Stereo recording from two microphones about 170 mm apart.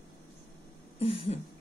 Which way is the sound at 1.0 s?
35° left (ahead or behind).